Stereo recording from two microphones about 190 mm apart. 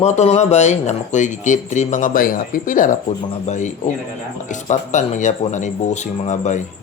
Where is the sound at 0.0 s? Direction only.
35° left (ahead or behind).